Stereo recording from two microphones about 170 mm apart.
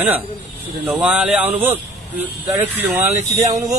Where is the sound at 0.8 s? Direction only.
5° right (ahead or behind).